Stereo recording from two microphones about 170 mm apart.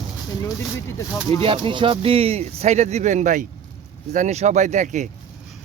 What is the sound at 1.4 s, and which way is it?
Speech, 30° right (ahead or behind).